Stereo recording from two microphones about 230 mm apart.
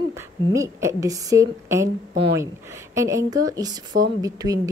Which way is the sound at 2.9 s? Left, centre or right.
Centre.